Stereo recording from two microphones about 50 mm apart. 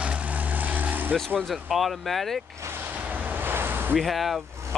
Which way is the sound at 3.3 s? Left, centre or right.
Right.